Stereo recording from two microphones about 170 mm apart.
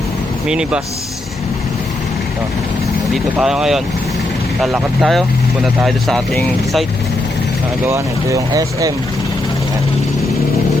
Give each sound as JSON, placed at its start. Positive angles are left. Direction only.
{"t": 0.4, "sound": "speech", "side_deg": -5}
{"t": 3.3, "sound": "speech", "side_deg": -5}
{"t": 7.9, "sound": "speech", "side_deg": -15}